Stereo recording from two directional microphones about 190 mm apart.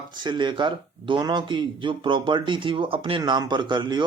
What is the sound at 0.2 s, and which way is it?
Speech, 25° right (ahead or behind).